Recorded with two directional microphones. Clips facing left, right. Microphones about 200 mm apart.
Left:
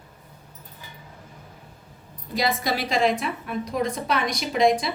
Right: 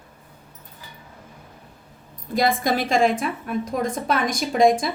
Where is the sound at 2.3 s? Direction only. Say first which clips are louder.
Right 4 dB; 50° right (ahead or behind).